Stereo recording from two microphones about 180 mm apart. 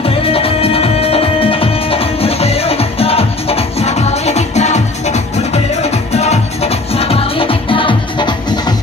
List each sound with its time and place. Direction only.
0.0 s music: 30° left (ahead or behind)